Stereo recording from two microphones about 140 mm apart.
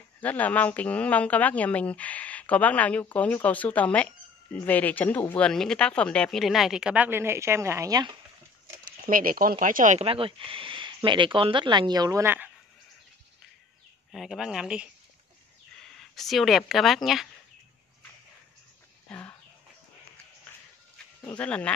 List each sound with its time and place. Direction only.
0.2 s a woman's voice: 10° left (ahead or behind); by 8.2 s 30° right (ahead or behind)
8.8 s speech: 85° right
9.9 s speech: 40° right (ahead or behind); by 12.4 s 20° right (ahead or behind)
14.1 s speech: centre (ahead or behind)
16.0 s speech: centre (ahead or behind)
19.0 s chicken: 10° left (ahead or behind)
21.4 s a woman's voice: 10° left (ahead or behind)